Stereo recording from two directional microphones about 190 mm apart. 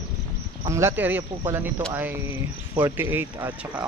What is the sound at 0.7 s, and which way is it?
Speech, 15° right (ahead or behind).